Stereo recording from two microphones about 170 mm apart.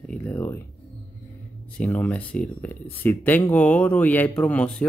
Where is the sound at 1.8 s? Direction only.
10° left (ahead or behind).